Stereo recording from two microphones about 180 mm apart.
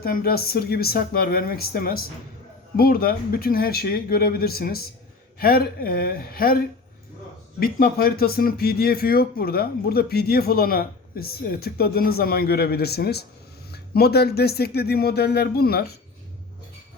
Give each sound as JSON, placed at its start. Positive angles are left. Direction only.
{"t": 0.0, "sound": "speech", "side_deg": 55}
{"t": 7.6, "sound": "speech", "side_deg": 55}